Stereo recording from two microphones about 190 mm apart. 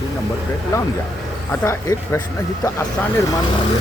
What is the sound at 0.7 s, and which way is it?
Speech, 15° left (ahead or behind).